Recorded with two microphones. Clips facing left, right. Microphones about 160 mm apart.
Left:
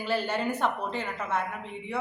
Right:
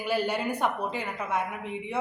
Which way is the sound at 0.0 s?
10° right (ahead or behind).